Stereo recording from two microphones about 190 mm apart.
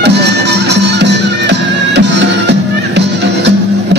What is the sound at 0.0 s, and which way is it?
Music, 65° right (ahead or behind).